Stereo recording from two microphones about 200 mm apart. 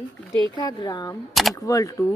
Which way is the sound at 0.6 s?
20° left (ahead or behind).